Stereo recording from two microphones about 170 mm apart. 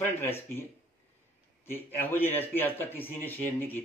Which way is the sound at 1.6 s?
10° left (ahead or behind).